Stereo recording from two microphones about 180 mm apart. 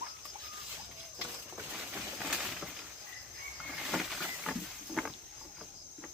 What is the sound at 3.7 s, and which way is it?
Wild animals, centre (ahead or behind).